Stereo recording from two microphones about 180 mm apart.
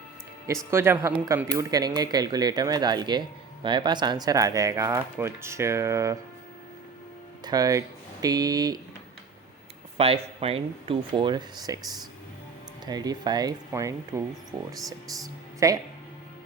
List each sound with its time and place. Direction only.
0.4 s speech: 15° right (ahead or behind)
7.4 s speech: 20° right (ahead or behind)
10.0 s speech: 30° right (ahead or behind)